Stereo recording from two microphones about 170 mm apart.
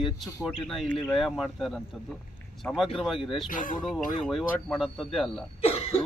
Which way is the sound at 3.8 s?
Centre (ahead or behind).